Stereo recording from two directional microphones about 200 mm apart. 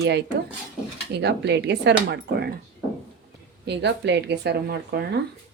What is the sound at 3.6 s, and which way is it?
Speech, 55° right (ahead or behind).